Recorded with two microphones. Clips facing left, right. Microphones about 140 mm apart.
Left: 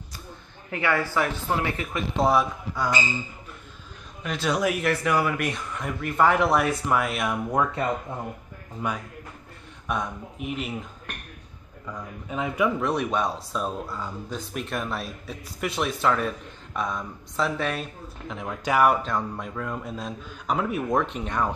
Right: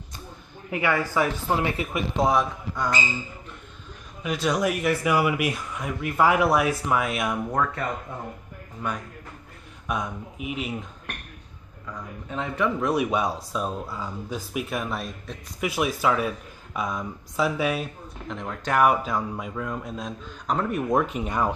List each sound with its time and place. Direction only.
0.7 s speech: 10° right (ahead or behind)
2.1 s speech: centre (ahead or behind)
4.2 s speech: centre (ahead or behind)
7.5 s speech: 15° left (ahead or behind)
9.8 s speech: centre (ahead or behind)
11.9 s speech: 10° left (ahead or behind)
12.8 s speech: 5° right (ahead or behind)
18.3 s speech: 5° left (ahead or behind)